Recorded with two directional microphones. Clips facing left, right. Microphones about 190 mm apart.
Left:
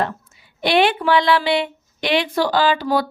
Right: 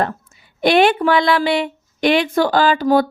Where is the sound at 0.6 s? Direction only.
45° right (ahead or behind).